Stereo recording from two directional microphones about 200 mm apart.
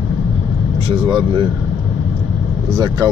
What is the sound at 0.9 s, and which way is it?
Speech, 20° right (ahead or behind).